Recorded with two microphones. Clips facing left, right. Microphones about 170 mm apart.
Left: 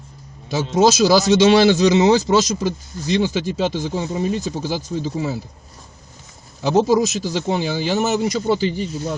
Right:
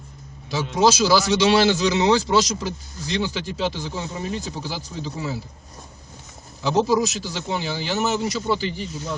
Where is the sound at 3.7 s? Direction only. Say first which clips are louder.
Left 7 dB; 45° left (ahead or behind).